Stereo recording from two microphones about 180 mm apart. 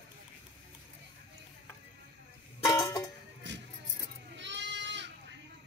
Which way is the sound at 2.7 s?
20° left (ahead or behind).